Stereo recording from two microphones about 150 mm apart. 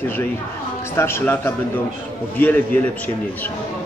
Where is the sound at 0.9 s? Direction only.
15° left (ahead or behind).